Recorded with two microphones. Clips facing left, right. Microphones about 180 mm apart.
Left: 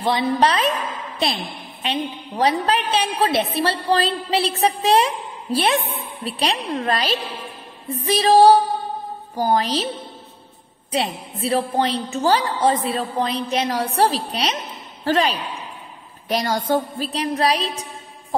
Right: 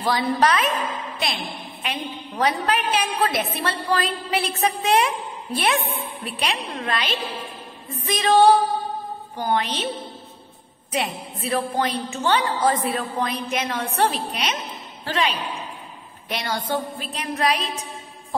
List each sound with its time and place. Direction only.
0.0 s a woman's voice: 25° left (ahead or behind)
10.9 s a woman's voice: 30° left (ahead or behind)